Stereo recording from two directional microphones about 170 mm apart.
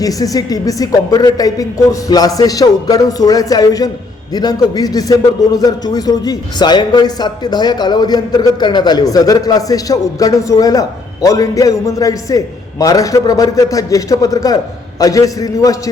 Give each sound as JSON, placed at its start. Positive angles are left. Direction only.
{"t": 0.0, "sound": "a man's voice", "side_deg": 20}